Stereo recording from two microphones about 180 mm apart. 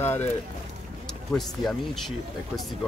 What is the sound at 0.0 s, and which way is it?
Speech, 10° left (ahead or behind).